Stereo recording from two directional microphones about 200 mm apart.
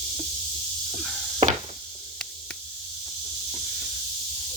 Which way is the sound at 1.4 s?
30° right (ahead or behind).